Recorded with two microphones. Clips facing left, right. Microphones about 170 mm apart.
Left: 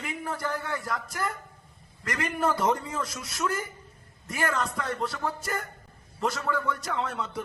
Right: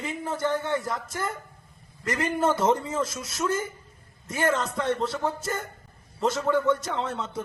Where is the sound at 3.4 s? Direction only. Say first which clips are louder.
Right 3 dB; 20° right (ahead or behind).